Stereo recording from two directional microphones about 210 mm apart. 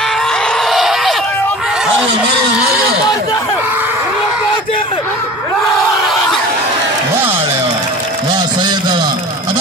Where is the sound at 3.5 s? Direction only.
10° right (ahead or behind).